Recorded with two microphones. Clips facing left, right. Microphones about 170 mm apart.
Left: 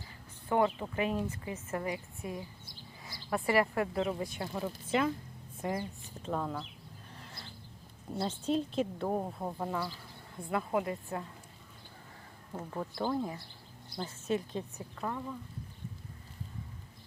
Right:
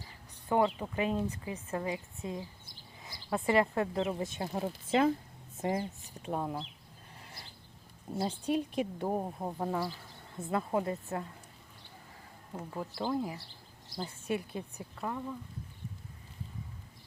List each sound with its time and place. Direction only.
0.4 s a woman's voice: 20° right (ahead or behind)
8.1 s speech: 10° right (ahead or behind)
9.6 s speech: 40° right (ahead or behind)
10.3 s a woman's voice: 25° right (ahead or behind)
12.7 s speech: 10° right (ahead or behind)